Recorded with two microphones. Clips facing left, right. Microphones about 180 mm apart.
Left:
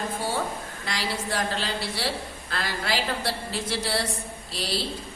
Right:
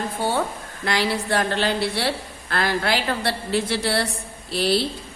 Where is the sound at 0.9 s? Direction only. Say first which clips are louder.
Right 8 dB; 65° right (ahead or behind).